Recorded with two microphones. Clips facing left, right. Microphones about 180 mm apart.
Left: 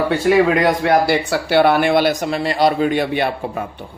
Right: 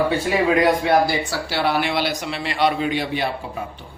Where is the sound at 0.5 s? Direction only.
70° left (ahead or behind).